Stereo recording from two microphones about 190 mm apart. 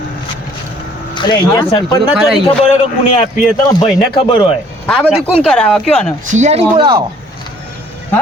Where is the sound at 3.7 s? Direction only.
25° left (ahead or behind).